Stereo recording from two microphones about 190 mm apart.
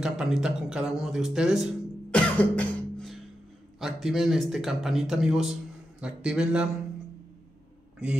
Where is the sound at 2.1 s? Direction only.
5° left (ahead or behind).